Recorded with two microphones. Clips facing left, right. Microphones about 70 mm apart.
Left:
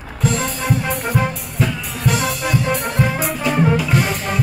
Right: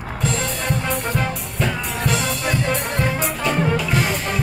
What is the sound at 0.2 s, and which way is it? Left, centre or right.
Music, centre.